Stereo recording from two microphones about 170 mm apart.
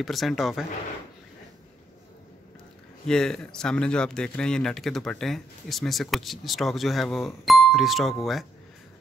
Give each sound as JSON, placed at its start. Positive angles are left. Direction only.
{"t": 0.0, "sound": "speech", "side_deg": 0}
{"t": 3.1, "sound": "speech", "side_deg": 5}